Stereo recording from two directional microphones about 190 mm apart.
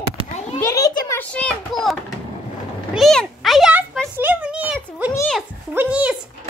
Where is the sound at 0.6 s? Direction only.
15° left (ahead or behind).